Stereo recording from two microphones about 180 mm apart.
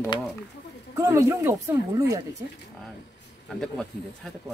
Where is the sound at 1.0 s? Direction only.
15° right (ahead or behind).